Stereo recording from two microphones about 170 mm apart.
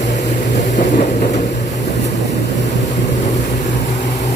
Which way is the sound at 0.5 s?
45° left (ahead or behind).